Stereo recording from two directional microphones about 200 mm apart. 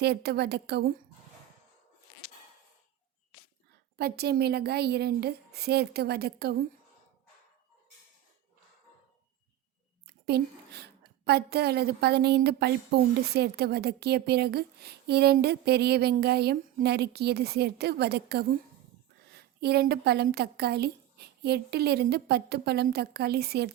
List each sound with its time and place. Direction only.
0.0 s a woman's voice: 55° right (ahead or behind)
3.9 s a woman's voice: 55° right (ahead or behind)
10.1 s a woman's voice: 55° right (ahead or behind)